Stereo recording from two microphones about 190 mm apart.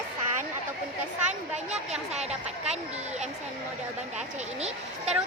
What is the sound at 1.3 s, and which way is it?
Speech, 35° right (ahead or behind).